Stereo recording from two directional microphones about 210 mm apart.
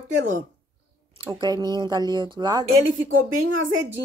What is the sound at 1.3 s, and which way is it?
Speech, 20° right (ahead or behind).